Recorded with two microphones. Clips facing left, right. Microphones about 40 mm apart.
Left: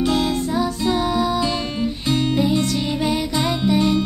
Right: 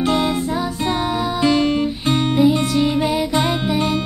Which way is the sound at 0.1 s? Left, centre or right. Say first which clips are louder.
Right 1 dB; centre.